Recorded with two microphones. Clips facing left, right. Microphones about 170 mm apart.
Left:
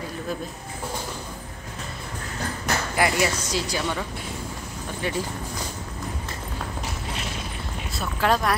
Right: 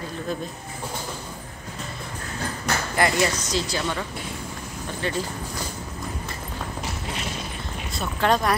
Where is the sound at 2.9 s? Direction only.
10° left (ahead or behind).